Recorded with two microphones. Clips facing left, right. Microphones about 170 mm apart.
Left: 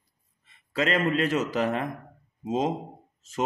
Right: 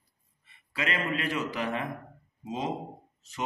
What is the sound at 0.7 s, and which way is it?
A man's voice, 40° left (ahead or behind).